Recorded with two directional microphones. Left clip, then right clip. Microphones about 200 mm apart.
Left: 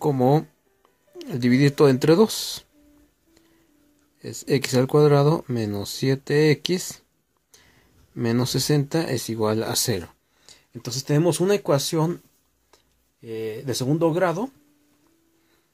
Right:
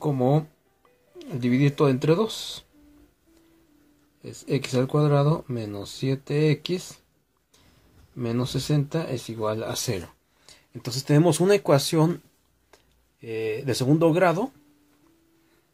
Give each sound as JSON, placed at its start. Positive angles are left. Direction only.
{"t": 0.0, "sound": "speech", "side_deg": 40}
{"t": 4.2, "sound": "speech", "side_deg": 40}
{"t": 8.2, "sound": "speech", "side_deg": 45}
{"t": 10.0, "sound": "speech", "side_deg": 15}